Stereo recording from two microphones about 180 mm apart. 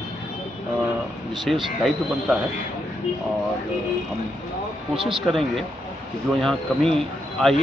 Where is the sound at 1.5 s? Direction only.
Centre (ahead or behind).